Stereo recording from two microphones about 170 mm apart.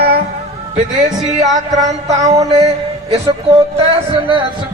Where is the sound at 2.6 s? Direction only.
40° right (ahead or behind).